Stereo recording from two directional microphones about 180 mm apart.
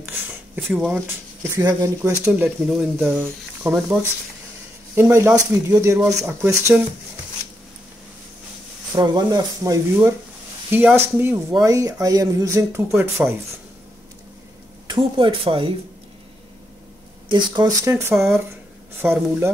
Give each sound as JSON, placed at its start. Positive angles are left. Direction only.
{"t": 0.6, "sound": "speech", "side_deg": 0}
{"t": 1.6, "sound": "speech", "side_deg": -20}
{"t": 8.9, "sound": "speech", "side_deg": -20}
{"t": 14.9, "sound": "speech", "side_deg": -30}
{"t": 17.3, "sound": "speech", "side_deg": -25}